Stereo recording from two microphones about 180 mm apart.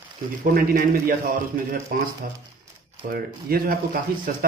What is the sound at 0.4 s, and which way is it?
A man's voice, 45° right (ahead or behind).